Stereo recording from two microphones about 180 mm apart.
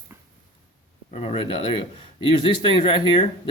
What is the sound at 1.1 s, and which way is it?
Speech, 35° left (ahead or behind).